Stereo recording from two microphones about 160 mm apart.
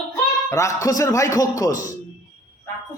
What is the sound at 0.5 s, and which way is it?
A man's voice, 20° left (ahead or behind).